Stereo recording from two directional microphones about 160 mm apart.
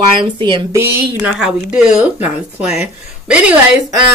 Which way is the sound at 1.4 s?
5° right (ahead or behind).